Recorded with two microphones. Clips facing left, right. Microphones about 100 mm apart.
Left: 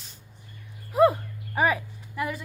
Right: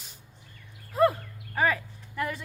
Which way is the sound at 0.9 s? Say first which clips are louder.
Left 3 dB; 15° left (ahead or behind).